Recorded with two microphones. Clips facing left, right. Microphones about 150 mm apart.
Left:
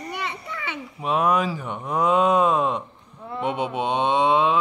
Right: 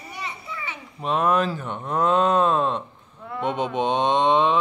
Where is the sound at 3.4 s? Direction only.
10° left (ahead or behind).